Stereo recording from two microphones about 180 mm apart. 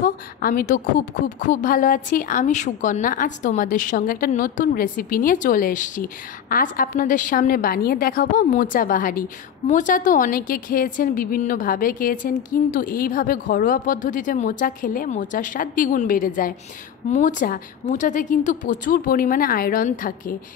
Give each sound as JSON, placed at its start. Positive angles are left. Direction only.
{"t": 0.0, "sound": "a woman's voice", "side_deg": 50}